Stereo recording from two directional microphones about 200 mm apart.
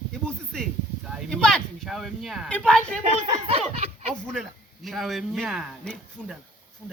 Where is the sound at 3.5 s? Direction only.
30° right (ahead or behind).